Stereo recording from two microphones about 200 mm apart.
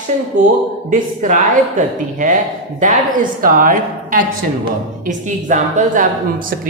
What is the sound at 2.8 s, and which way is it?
A woman's voice, 45° right (ahead or behind).